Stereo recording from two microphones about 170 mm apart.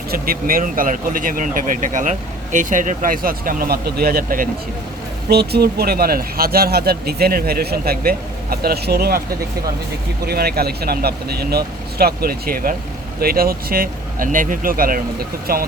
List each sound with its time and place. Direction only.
0.1 s speech: 60° right (ahead or behind)
5.3 s speech: 70° right (ahead or behind)
10.2 s speech: 65° right (ahead or behind)